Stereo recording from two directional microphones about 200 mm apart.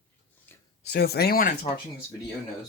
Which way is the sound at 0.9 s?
50° left (ahead or behind).